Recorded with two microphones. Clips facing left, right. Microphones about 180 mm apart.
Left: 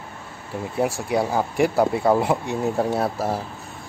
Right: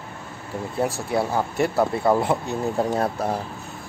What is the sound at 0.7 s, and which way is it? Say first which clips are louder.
Speech: left 1 dB; 10° left (ahead or behind).